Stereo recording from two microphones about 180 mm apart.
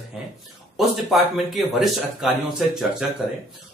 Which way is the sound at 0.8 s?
Centre (ahead or behind).